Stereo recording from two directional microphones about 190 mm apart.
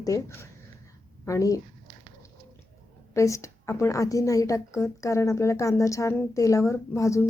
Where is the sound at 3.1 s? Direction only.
15° left (ahead or behind).